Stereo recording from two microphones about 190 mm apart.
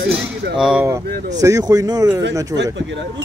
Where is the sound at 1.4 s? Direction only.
20° right (ahead or behind).